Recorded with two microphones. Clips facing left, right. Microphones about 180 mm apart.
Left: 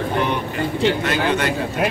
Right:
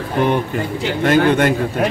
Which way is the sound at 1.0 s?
50° right (ahead or behind).